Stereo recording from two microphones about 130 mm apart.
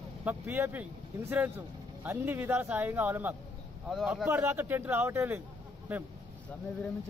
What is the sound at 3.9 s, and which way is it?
Speech, centre (ahead or behind).